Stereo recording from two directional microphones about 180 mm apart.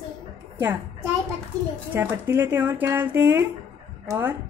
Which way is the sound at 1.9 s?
10° right (ahead or behind).